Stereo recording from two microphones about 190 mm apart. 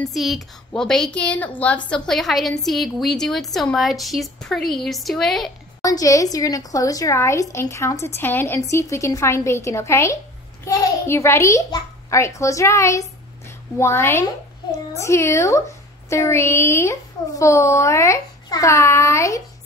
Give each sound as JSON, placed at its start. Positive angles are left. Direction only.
{"t": 0.1, "sound": "a woman's voice", "side_deg": 0}
{"t": 5.8, "sound": "a woman's voice", "side_deg": 15}